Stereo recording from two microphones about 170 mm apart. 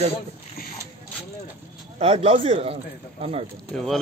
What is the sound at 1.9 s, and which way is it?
Speech, 35° right (ahead or behind).